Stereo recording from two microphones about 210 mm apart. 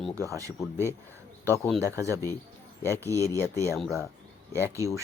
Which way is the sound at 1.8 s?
15° right (ahead or behind).